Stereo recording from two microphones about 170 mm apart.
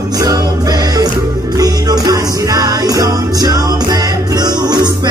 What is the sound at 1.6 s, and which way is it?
Music, 20° right (ahead or behind).